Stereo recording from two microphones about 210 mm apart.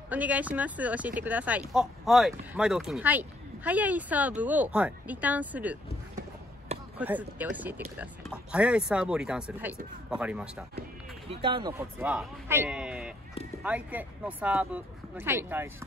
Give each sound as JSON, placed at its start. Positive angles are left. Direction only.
{"t": 0.1, "sound": "speech", "side_deg": -5}
{"t": 7.0, "sound": "speech", "side_deg": -10}
{"t": 11.2, "sound": "speech", "side_deg": -25}
{"t": 12.4, "sound": "a sound", "side_deg": -10}
{"t": 13.6, "sound": "speech", "side_deg": -5}